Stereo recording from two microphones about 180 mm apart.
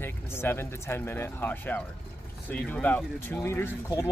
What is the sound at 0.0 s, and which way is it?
Speech, 10° left (ahead or behind).